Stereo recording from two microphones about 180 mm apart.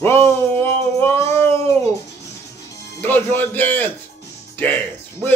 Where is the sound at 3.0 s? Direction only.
10° left (ahead or behind).